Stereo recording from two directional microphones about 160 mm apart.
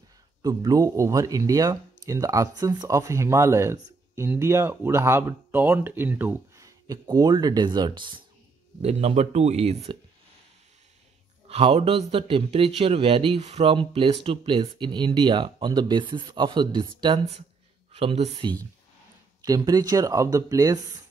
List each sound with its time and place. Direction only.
0.4 s speech: 25° right (ahead or behind)
8.8 s speech: 40° right (ahead or behind)
11.4 s speech: 35° right (ahead or behind)
19.4 s speech: 25° right (ahead or behind)